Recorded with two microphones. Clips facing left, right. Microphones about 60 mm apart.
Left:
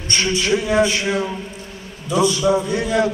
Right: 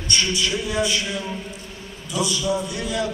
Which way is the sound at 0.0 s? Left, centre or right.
Left.